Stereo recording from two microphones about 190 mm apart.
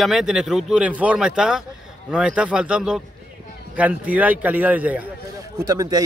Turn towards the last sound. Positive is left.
turn(degrees=-20)  # may be behind; listen again after turning